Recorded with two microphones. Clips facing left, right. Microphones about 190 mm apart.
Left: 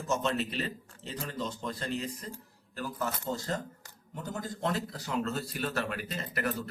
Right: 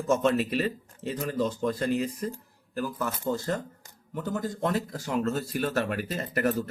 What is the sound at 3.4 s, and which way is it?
Speech, 55° right (ahead or behind).